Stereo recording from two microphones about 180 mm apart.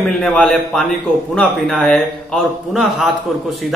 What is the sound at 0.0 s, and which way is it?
A man's voice, 5° left (ahead or behind).